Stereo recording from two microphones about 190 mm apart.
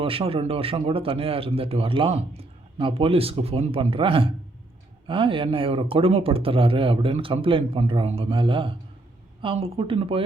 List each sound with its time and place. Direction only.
0.0 s a man's voice: 30° right (ahead or behind)